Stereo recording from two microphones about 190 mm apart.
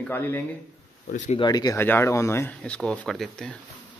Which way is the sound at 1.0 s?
40° left (ahead or behind).